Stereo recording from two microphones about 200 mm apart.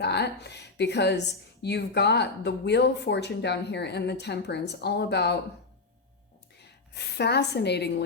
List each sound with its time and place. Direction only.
0.0 s speech: 55° left (ahead or behind)
6.6 s a woman's voice: 55° left (ahead or behind)